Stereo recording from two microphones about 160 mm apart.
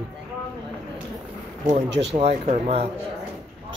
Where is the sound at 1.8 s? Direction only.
90° right.